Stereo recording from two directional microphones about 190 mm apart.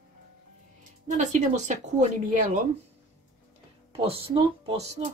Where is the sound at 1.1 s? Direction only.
40° right (ahead or behind).